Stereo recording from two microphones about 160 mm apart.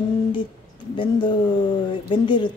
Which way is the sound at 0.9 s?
30° left (ahead or behind).